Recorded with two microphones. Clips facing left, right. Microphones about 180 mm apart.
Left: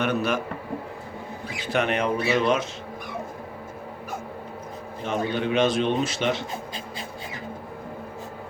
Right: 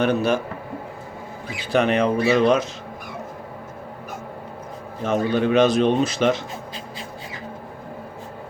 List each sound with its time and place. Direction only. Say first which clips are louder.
0.0 s a man's voice: right 5 dB; 30° right (ahead or behind)
1.7 s a man's voice: right 5 dB; 35° right (ahead or behind)
5.0 s a man's voice: right 6 dB; 40° right (ahead or behind)